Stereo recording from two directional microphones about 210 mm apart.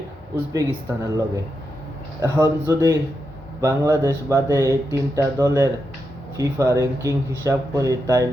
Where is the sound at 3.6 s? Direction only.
15° right (ahead or behind).